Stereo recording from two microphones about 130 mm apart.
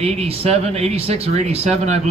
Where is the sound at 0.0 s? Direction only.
50° right (ahead or behind).